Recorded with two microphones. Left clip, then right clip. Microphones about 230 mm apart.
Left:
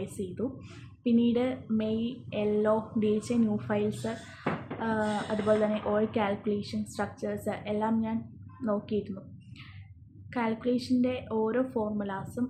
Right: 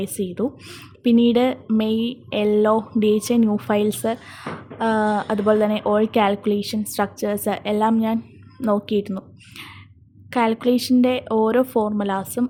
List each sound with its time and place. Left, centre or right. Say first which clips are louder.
0.0 s speech: right 10 dB; right
10.2 s speech: right 11 dB; right